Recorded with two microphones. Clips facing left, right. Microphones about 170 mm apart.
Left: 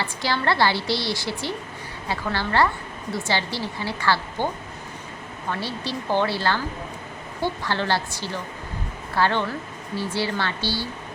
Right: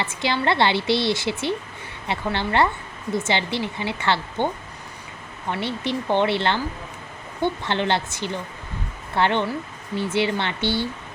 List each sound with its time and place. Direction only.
0.0 s speech: 20° right (ahead or behind)
5.5 s speech: 20° right (ahead or behind)